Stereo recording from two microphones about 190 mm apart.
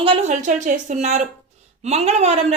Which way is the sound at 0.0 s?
35° right (ahead or behind).